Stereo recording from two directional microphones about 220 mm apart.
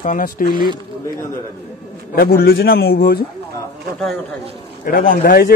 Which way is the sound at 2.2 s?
45° left (ahead or behind).